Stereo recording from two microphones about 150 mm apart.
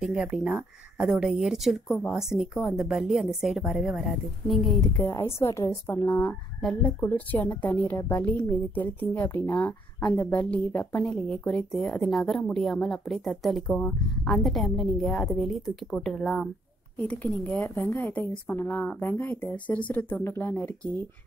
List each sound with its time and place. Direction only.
0.0 s speech: 5° right (ahead or behind)
5.1 s a woman's voice: 20° left (ahead or behind)
6.6 s a woman's voice: 5° left (ahead or behind)